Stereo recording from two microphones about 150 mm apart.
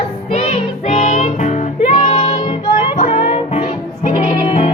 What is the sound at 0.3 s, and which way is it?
Music, 50° left (ahead or behind).